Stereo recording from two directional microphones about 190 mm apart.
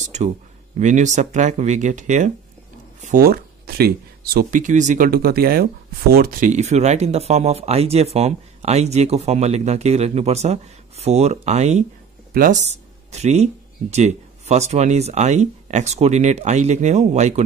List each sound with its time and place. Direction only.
0.7 s speech: 40° right (ahead or behind)
13.1 s speech: 35° right (ahead or behind)